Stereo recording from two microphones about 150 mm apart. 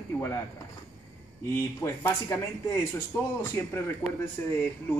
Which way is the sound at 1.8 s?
15° left (ahead or behind).